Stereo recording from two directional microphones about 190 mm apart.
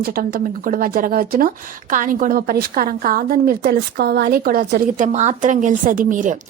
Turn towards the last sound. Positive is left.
turn(degrees=-45)  # may be behind; listen again after turning